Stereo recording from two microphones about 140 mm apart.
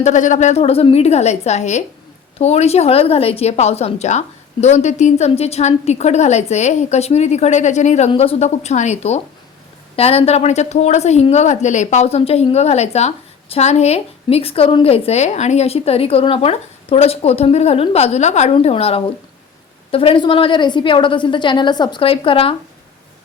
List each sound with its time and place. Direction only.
0.0 s a woman's voice: 60° left (ahead or behind); by 22.5 s 40° left (ahead or behind)